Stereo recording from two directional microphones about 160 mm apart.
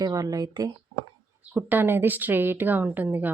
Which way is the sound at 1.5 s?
10° right (ahead or behind).